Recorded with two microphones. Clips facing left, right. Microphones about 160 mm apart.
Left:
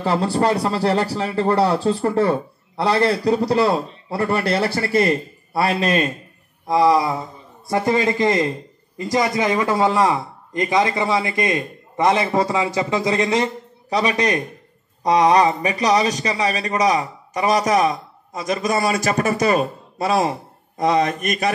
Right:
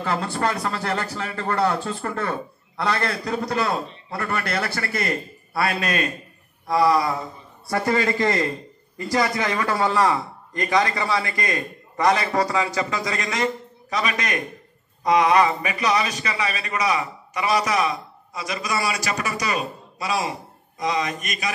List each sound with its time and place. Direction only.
0.0 s a man's voice: 30° left (ahead or behind); by 21.5 s 55° left (ahead or behind)